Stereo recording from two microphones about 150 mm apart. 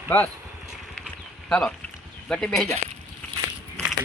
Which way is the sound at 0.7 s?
Centre (ahead or behind).